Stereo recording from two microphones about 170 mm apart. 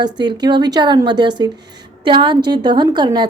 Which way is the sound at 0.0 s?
25° right (ahead or behind).